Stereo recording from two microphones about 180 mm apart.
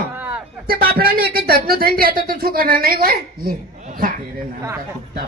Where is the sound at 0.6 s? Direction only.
55° right (ahead or behind).